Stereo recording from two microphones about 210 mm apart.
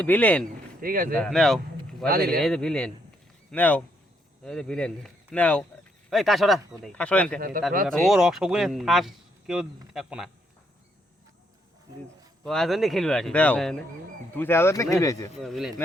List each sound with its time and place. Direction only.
0.0 s speech: 10° left (ahead or behind)
0.8 s speech: 45° right (ahead or behind)
1.1 s speech: 5° left (ahead or behind)
2.0 s speech: 45° right (ahead or behind)
2.4 s speech: 5° left (ahead or behind)
12.5 s speech: centre (ahead or behind)
15.4 s speech: centre (ahead or behind)